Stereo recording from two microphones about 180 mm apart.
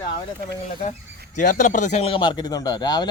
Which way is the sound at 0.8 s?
40° left (ahead or behind).